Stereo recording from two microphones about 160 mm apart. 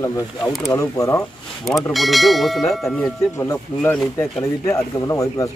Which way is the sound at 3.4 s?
15° left (ahead or behind).